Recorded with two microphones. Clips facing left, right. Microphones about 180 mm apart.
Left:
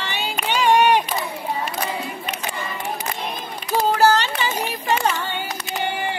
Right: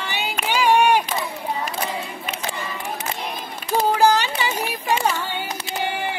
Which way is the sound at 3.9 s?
15° right (ahead or behind).